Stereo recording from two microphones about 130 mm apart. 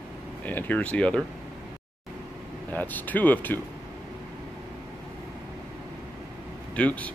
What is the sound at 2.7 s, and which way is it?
Speech, 15° left (ahead or behind).